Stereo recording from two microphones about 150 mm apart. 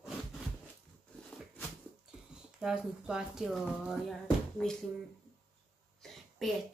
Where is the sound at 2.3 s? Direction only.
5° right (ahead or behind).